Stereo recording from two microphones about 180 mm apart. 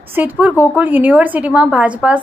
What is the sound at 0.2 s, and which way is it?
Speech, 10° right (ahead or behind).